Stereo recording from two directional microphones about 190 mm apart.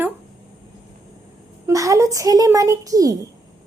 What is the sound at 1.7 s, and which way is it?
A child's voice, 15° right (ahead or behind).